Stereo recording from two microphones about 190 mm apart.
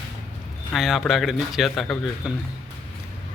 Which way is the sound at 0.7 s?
Centre (ahead or behind).